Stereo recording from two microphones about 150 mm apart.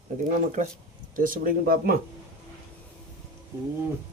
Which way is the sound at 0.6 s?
55° right (ahead or behind).